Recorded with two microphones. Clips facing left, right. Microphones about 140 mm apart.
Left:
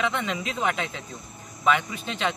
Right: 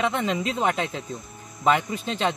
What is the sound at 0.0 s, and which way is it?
Speech, 35° right (ahead or behind).